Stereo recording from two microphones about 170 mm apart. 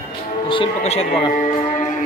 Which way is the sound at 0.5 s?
35° left (ahead or behind).